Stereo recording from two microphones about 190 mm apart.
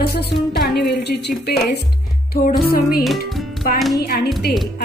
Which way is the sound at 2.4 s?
50° left (ahead or behind).